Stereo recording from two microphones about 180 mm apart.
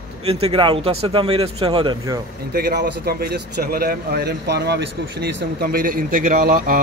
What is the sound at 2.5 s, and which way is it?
Speech, 65° right (ahead or behind).